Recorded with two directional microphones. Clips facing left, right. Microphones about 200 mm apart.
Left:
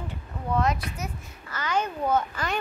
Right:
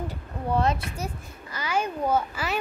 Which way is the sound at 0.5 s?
30° right (ahead or behind).